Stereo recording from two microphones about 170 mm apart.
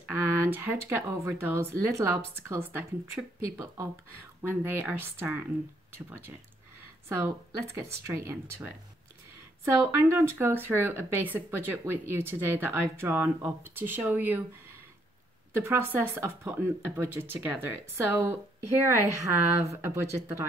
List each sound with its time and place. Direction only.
0.1 s speech: 15° right (ahead or behind)
9.8 s speech: 15° right (ahead or behind)
15.5 s speech: 15° right (ahead or behind)
19.6 s speech: 15° right (ahead or behind)